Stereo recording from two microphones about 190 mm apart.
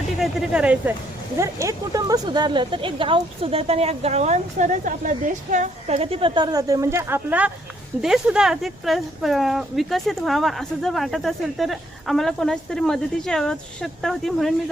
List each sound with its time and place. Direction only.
0.2 s speech: centre (ahead or behind)